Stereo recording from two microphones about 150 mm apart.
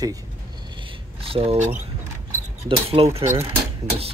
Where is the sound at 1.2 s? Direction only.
40° right (ahead or behind).